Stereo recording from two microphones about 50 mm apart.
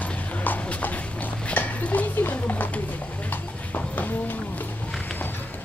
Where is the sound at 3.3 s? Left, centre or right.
Left.